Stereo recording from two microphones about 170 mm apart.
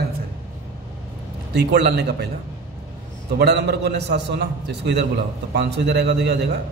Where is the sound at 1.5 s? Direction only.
75° right (ahead or behind).